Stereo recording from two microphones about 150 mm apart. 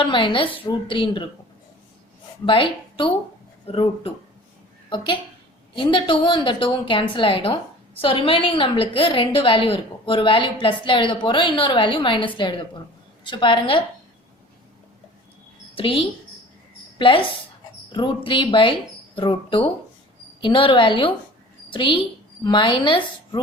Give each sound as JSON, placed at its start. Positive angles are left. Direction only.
{"t": 0.0, "sound": "a woman's voice", "side_deg": 35}
{"t": 2.5, "sound": "a woman's voice", "side_deg": 35}
{"t": 15.7, "sound": "a woman's voice", "side_deg": 35}